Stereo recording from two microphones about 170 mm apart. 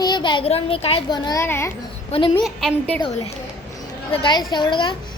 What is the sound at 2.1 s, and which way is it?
Speech, 30° left (ahead or behind).